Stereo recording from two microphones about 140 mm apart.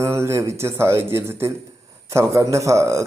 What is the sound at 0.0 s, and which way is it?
Speech, 20° right (ahead or behind).